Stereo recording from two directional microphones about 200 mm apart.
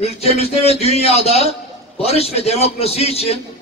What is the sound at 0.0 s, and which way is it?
A man's voice, 30° left (ahead or behind).